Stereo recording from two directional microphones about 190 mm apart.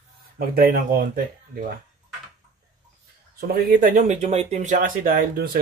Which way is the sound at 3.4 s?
50° right (ahead or behind).